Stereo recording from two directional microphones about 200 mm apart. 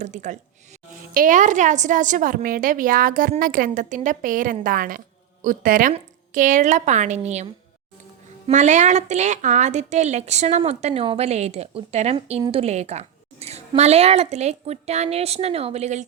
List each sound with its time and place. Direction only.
0.0 s a woman's voice: 35° right (ahead or behind)